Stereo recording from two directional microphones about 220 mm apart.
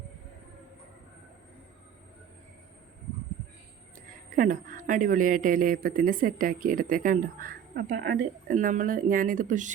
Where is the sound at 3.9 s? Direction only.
35° right (ahead or behind).